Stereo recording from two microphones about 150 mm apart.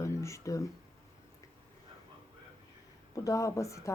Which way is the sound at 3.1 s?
20° left (ahead or behind).